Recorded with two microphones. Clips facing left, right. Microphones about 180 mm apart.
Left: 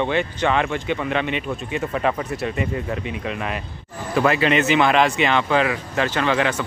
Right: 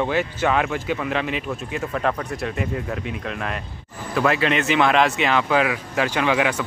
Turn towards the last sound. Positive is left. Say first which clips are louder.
# even
turn(degrees=-10)  # may be behind; listen again after turning